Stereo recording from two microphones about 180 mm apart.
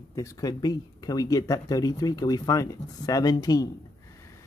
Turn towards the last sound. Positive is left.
turn(degrees=20)  # may be behind; listen again after turning